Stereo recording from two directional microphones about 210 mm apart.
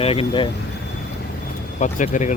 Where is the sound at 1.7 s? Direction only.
35° left (ahead or behind).